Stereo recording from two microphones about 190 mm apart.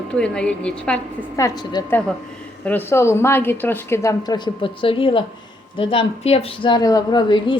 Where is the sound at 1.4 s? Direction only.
20° left (ahead or behind).